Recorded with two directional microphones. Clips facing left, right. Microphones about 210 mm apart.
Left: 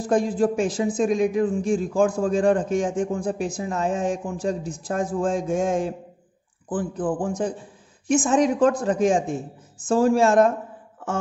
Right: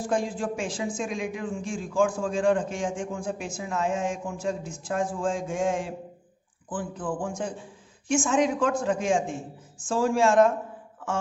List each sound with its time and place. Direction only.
0.0 s speech: 40° left (ahead or behind)